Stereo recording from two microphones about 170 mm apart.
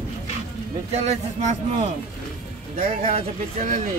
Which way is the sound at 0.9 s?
40° right (ahead or behind).